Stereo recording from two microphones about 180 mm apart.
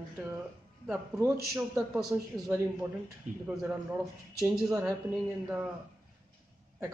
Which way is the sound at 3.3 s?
45° right (ahead or behind).